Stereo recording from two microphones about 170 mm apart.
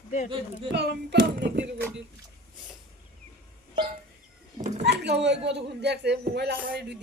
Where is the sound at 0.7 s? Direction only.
75° right (ahead or behind).